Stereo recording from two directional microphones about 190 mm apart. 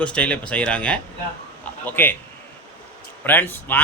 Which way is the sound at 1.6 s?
10° left (ahead or behind).